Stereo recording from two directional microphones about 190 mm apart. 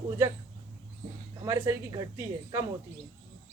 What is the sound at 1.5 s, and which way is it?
Speech, 20° right (ahead or behind).